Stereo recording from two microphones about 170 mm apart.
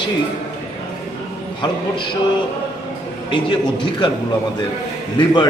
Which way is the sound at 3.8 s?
25° left (ahead or behind).